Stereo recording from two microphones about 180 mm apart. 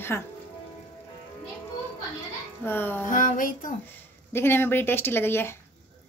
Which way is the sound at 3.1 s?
45° left (ahead or behind).